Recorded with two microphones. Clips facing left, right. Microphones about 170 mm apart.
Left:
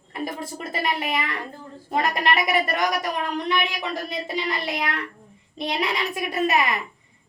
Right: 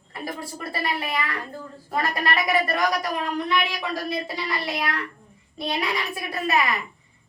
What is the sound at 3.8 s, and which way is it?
A child's voice, 20° left (ahead or behind).